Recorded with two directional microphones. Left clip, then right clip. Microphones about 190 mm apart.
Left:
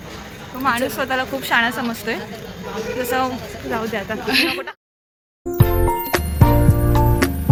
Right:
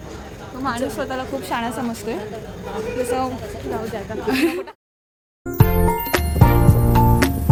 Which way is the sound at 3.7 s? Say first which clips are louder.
Left 4 dB; 20° left (ahead or behind).